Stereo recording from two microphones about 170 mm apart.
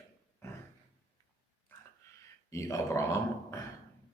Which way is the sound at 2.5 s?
20° left (ahead or behind).